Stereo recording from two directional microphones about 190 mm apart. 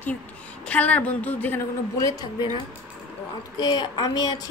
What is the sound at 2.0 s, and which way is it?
Speech, 20° left (ahead or behind).